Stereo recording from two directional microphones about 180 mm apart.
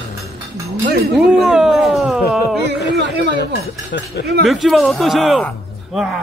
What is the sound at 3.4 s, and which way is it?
Speech, 70° left (ahead or behind).